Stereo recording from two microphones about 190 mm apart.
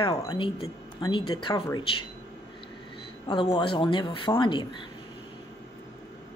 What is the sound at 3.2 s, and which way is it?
Speech, 25° left (ahead or behind).